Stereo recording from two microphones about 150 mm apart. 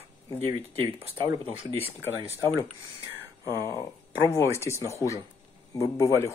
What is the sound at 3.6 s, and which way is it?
A man's voice, 20° left (ahead or behind).